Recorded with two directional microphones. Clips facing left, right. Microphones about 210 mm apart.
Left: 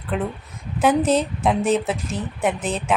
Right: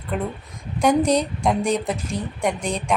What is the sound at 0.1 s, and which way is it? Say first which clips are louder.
Speech: left 1 dB; centre (ahead or behind).